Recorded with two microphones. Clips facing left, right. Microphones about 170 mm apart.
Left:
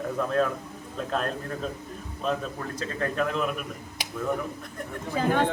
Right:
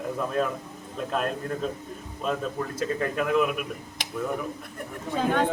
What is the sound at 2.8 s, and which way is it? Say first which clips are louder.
Speech: right 1 dB; 10° right (ahead or behind).